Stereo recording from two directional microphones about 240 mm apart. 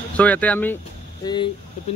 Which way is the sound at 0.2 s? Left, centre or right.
Centre.